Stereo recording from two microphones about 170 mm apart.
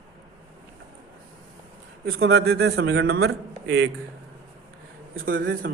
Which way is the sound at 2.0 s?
65° right (ahead or behind).